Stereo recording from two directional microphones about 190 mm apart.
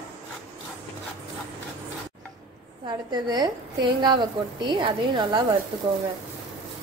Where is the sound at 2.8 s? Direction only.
25° right (ahead or behind).